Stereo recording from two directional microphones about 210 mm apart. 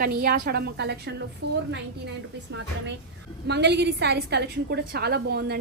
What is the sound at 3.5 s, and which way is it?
A woman's voice, 55° right (ahead or behind).